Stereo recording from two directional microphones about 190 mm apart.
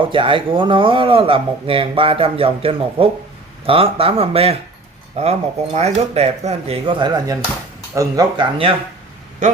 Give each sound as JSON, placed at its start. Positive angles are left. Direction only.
{"t": 0.0, "sound": "speech", "side_deg": -25}